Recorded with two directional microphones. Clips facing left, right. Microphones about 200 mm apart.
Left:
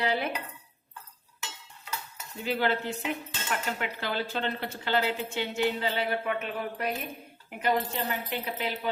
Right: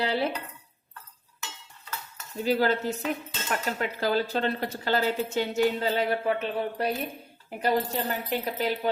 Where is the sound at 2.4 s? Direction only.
40° right (ahead or behind).